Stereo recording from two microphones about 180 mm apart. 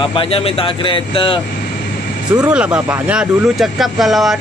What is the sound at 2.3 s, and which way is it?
Speech, 5° right (ahead or behind).